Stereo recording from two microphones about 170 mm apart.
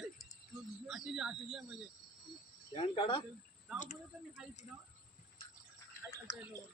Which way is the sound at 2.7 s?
30° left (ahead or behind).